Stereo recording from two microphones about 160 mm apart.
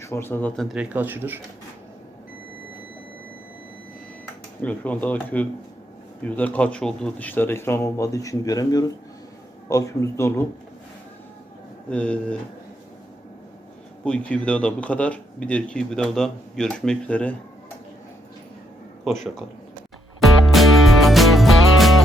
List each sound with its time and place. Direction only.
0.0 s speech: 15° left (ahead or behind); by 1.4 s 10° right (ahead or behind)
4.6 s a man's voice: 10° left (ahead or behind)
11.9 s a man's voice: 5° left (ahead or behind)
14.0 s a man's voice: 5° left (ahead or behind)
20.1 s music: centre (ahead or behind)